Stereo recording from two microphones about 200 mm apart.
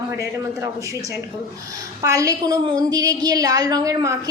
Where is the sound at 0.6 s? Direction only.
15° right (ahead or behind).